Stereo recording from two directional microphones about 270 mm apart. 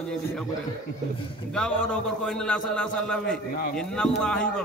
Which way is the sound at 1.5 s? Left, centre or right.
Centre.